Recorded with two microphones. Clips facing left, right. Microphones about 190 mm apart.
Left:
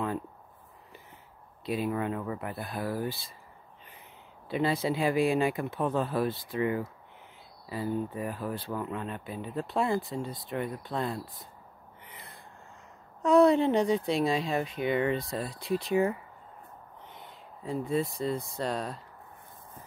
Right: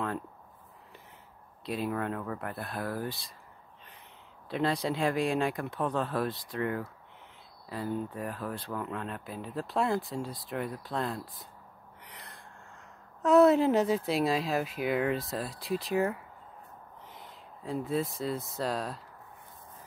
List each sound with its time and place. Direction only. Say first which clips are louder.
1.7 s speech: left 2 dB; centre (ahead or behind)
4.5 s speech: left 2 dB; centre (ahead or behind)
12.0 s a sound: even; centre (ahead or behind)
13.2 s speech: even; centre (ahead or behind)